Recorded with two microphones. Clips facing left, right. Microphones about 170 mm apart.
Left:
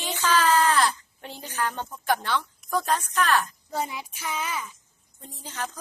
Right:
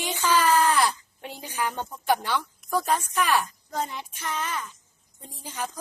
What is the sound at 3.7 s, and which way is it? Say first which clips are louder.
Speech: left 1 dB; 10° left (ahead or behind).